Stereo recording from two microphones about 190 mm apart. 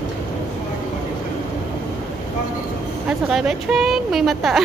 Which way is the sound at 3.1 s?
Centre (ahead or behind).